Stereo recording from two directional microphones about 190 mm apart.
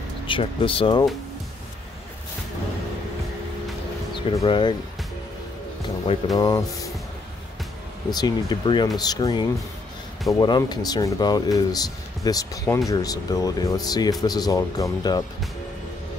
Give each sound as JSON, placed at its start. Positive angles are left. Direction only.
{"t": 0.3, "sound": "speech", "side_deg": 25}
{"t": 4.1, "sound": "speech", "side_deg": 25}
{"t": 6.3, "sound": "speech", "side_deg": 20}
{"t": 8.1, "sound": "speech", "side_deg": 20}